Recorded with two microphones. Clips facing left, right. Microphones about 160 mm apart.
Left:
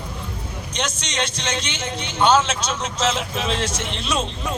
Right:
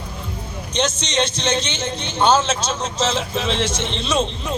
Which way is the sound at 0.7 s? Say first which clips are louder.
Right 6 dB; 25° right (ahead or behind).